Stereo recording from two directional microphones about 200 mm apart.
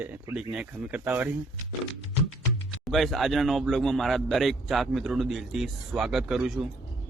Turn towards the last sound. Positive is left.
turn(degrees=0)  # may be behind; listen again after turning